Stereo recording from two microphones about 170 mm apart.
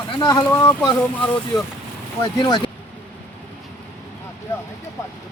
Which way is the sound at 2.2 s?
25° left (ahead or behind).